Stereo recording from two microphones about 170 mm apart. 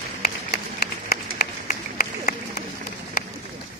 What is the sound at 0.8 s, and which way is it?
Run, 65° left (ahead or behind).